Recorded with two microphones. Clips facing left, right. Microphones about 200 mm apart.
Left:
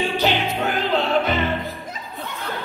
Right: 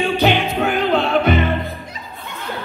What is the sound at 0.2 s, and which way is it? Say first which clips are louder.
Music: right 4 dB; 55° right (ahead or behind).